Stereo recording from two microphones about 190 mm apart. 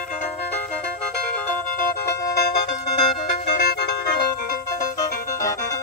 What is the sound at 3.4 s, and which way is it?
Music, 60° left (ahead or behind).